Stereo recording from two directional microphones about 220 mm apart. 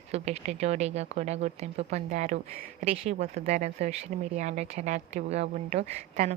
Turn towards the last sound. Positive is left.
turn(degrees=-30)  # may be behind; listen again after turning